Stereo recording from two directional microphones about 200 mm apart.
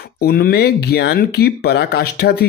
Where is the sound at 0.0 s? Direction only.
50° left (ahead or behind).